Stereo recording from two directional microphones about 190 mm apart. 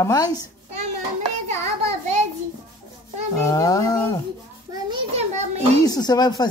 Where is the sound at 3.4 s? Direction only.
20° left (ahead or behind).